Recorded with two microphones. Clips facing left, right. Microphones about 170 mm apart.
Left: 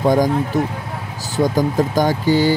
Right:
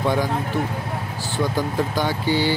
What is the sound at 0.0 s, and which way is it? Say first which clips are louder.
Speech: left 6 dB; 45° left (ahead or behind).